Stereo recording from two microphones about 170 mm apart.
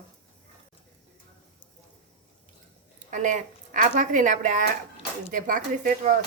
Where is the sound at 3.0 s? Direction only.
45° right (ahead or behind).